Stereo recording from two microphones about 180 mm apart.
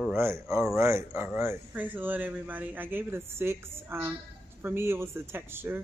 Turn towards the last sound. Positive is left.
turn(degrees=-10)  # may be behind; listen again after turning